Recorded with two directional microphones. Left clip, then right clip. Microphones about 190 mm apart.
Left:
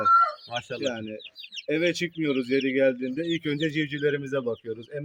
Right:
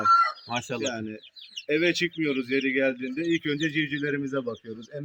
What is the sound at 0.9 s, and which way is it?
Speech, 60° left (ahead or behind).